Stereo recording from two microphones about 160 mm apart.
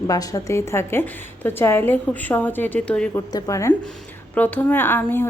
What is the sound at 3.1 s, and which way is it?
A woman's voice, 20° left (ahead or behind).